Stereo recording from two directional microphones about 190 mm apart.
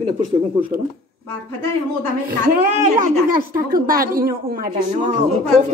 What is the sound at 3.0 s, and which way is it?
A woman's voice, 50° right (ahead or behind).